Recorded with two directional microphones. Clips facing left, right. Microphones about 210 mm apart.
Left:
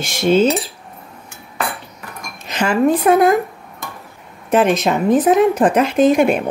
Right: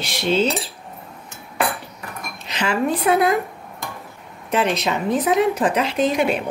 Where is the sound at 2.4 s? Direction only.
45° left (ahead or behind).